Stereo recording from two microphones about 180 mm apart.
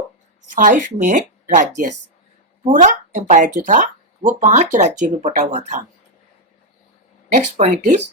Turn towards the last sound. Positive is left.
turn(degrees=-40)  # may be behind; listen again after turning